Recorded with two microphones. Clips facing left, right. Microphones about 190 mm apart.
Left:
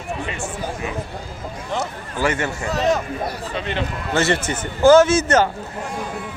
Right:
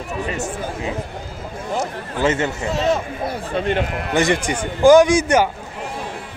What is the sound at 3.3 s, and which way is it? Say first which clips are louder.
Speech: right 5 dB; 50° right (ahead or behind).